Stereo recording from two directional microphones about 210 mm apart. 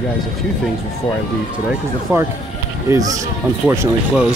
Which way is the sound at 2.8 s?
15° right (ahead or behind).